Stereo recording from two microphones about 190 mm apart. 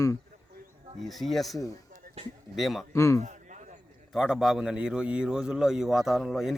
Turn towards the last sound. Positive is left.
turn(degrees=0)  # may be behind; listen again after turning